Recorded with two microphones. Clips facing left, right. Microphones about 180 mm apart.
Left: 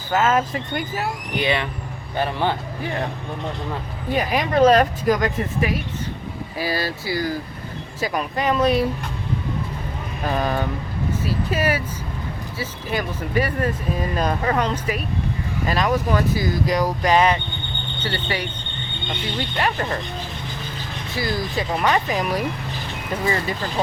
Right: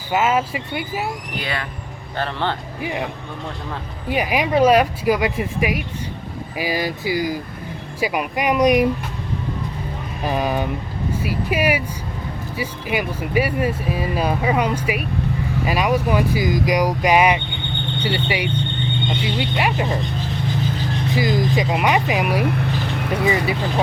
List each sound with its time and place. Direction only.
0.1 s speech: 10° right (ahead or behind)
1.4 s speech: 20° left (ahead or behind)
2.8 s speech: 10° right (ahead or behind)
4.1 s speech: 10° right (ahead or behind)
10.2 s speech: 10° right (ahead or behind)
21.2 s speech: 15° right (ahead or behind)